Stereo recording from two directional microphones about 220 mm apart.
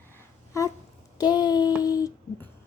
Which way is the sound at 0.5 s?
15° left (ahead or behind).